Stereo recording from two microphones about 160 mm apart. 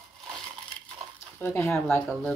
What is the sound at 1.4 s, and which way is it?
Speech, 15° left (ahead or behind).